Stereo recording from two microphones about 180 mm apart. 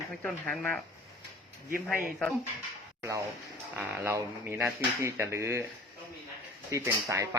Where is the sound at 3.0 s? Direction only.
15° right (ahead or behind).